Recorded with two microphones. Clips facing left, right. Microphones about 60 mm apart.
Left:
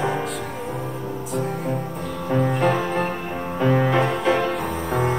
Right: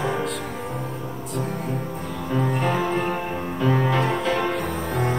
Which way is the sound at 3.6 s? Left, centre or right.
Centre.